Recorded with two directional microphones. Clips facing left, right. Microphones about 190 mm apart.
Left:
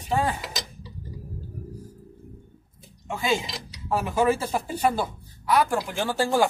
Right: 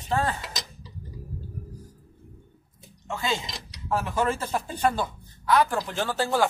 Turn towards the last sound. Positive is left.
turn(degrees=15)  # may be behind; listen again after turning